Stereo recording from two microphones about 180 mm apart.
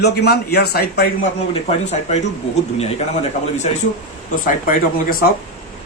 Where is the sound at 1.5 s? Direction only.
35° left (ahead or behind).